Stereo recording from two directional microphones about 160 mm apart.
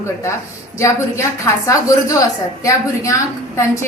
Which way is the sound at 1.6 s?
20° left (ahead or behind).